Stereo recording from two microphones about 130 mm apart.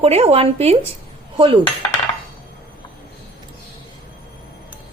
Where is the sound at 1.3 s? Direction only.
40° right (ahead or behind).